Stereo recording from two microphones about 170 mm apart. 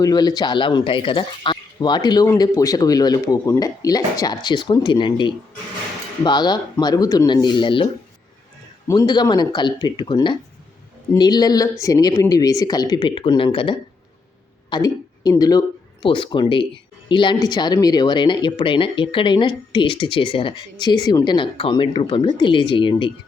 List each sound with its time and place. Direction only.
0.0 s speech: 25° left (ahead or behind)
8.9 s speech: 25° left (ahead or behind)